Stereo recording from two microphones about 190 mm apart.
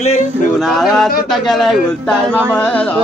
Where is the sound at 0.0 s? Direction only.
35° left (ahead or behind).